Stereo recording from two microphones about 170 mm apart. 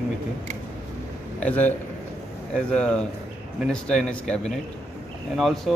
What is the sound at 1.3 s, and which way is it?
Speech, 10° left (ahead or behind).